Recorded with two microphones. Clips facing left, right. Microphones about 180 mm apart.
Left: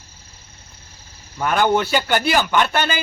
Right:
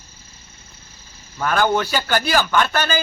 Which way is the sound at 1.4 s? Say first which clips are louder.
Left 1 dB; 20° left (ahead or behind).